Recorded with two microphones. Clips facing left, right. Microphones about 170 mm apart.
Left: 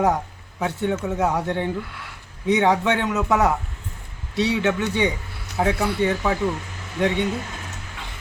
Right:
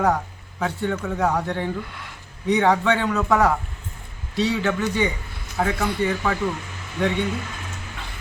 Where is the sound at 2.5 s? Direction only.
20° left (ahead or behind).